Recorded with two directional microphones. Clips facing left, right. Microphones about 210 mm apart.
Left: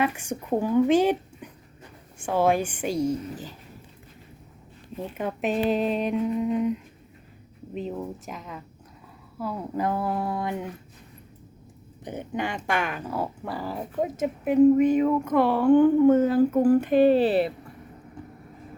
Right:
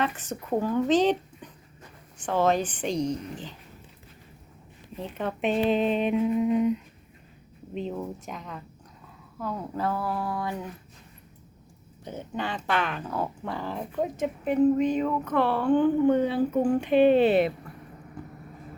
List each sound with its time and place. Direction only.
0.0 s speech: 10° left (ahead or behind)
4.9 s speech: 10° left (ahead or behind); by 10.5 s 25° left (ahead or behind)
12.0 s speech: 15° left (ahead or behind)
16.9 s speech: 40° left (ahead or behind)